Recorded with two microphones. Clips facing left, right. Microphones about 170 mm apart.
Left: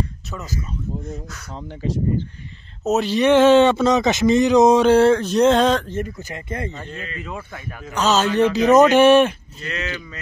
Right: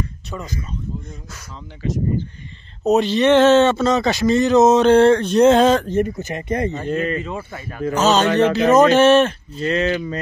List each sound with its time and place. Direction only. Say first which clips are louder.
0.3 s speech: right 1 dB; 5° left (ahead or behind)
2.8 s a man's voice: right 2 dB; 5° left (ahead or behind)
5.9 s speech: right 7 dB; 20° right (ahead or behind)
6.9 s speech: right 12 dB; 50° right (ahead or behind)
7.2 s speech: right 3 dB; 5° right (ahead or behind)
8.4 s a man's voice: left 2 dB; 15° left (ahead or behind)
9.6 s speech: right 11 dB; 30° right (ahead or behind)